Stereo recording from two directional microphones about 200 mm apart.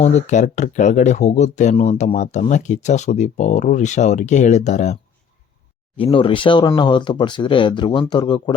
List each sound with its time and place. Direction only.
0.0 s speech: 35° left (ahead or behind)
6.0 s speech: 25° left (ahead or behind)